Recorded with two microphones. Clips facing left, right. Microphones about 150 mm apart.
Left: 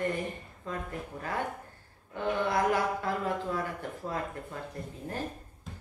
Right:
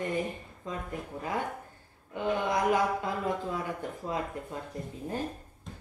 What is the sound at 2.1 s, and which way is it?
Speech, 15° right (ahead or behind).